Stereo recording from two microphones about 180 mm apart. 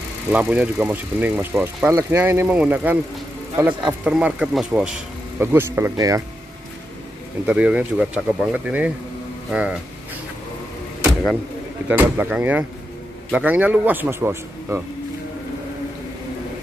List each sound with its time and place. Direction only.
0.3 s speech: 10° right (ahead or behind)
7.4 s speech: 5° right (ahead or behind)
11.9 s speech: 10° right (ahead or behind)